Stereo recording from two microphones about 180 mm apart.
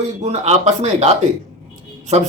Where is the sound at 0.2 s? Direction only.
40° right (ahead or behind).